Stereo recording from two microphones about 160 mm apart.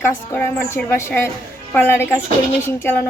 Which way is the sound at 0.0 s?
15° left (ahead or behind).